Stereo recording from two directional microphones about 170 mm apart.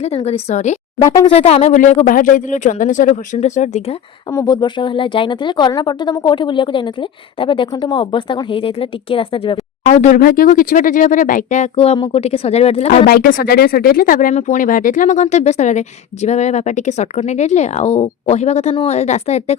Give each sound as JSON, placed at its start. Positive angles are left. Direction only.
{"t": 0.0, "sound": "speech", "side_deg": 40}
{"t": 4.3, "sound": "speech", "side_deg": 20}
{"t": 9.8, "sound": "speech", "side_deg": 45}
{"t": 13.1, "sound": "speech", "side_deg": 60}
{"t": 14.3, "sound": "speech", "side_deg": 45}